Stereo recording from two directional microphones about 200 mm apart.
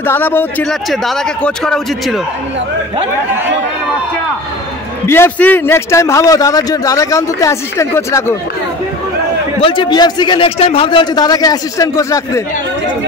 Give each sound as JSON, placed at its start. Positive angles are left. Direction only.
{"t": 0.0, "sound": "speech", "side_deg": 10}
{"t": 5.0, "sound": "a man's voice", "side_deg": 10}
{"t": 9.6, "sound": "a man's voice", "side_deg": 25}